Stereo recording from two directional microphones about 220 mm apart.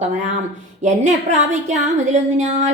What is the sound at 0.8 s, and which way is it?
A woman's voice, 30° right (ahead or behind).